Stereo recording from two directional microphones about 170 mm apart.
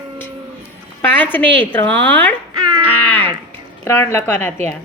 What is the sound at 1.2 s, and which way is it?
Speech, 10° left (ahead or behind).